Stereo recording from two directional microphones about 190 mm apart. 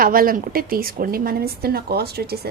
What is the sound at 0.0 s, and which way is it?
A woman's voice, 50° right (ahead or behind).